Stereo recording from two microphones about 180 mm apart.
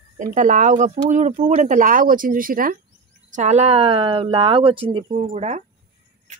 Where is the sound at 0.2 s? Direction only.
45° right (ahead or behind).